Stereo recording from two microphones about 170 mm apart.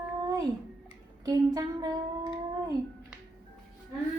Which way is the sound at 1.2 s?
20° right (ahead or behind).